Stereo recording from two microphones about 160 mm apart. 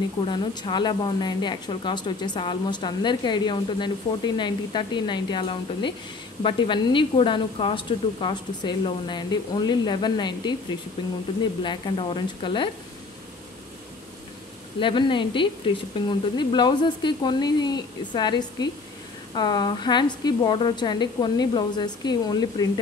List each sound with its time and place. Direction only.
0.2 s a woman's voice: 30° left (ahead or behind)
14.8 s a woman's voice: 30° left (ahead or behind)